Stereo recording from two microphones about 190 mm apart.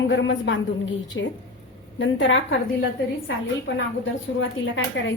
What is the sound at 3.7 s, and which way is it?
A woman's voice, 80° left.